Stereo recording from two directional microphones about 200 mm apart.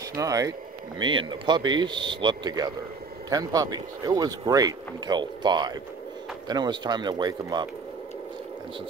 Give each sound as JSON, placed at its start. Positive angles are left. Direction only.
{"t": 0.1, "sound": "speech", "side_deg": -15}